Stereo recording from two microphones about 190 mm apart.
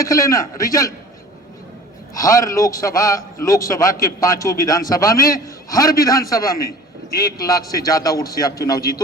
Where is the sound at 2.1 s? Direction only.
15° left (ahead or behind).